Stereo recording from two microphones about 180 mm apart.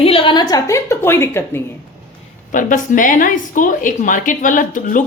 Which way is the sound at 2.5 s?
45° left (ahead or behind).